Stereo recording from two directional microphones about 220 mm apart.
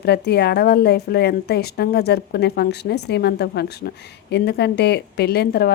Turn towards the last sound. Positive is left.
turn(degrees=45)  # may be behind; listen again after turning